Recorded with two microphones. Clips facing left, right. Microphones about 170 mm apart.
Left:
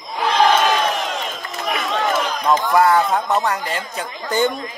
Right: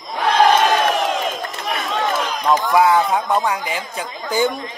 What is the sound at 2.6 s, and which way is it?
A man's voice, 5° right (ahead or behind).